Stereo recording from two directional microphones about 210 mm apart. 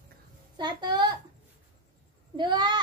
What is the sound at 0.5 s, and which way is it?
Child singing, 20° right (ahead or behind).